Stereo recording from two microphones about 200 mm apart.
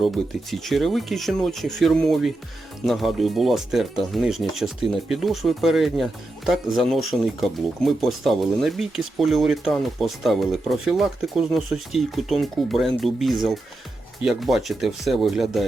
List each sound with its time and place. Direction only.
0.0 s speech: centre (ahead or behind)